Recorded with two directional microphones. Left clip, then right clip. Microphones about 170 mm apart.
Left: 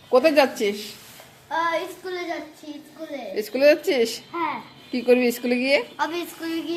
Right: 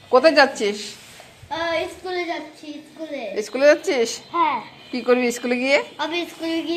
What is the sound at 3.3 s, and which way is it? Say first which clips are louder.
Speech: right 2 dB; 20° left (ahead or behind).